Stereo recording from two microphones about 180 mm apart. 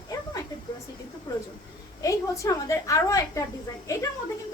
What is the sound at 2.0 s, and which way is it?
A woman's voice, 20° left (ahead or behind).